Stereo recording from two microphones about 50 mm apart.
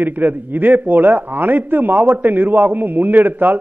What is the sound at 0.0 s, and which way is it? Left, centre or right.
A man's voice, right.